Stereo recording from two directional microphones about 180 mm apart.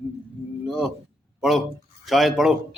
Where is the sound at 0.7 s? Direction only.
5° right (ahead or behind).